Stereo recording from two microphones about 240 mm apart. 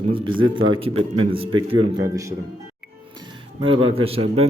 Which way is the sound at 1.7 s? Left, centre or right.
Right.